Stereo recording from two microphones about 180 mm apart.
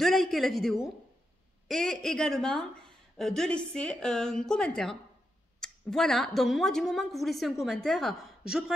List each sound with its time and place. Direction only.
0.0 s a woman's voice: centre (ahead or behind)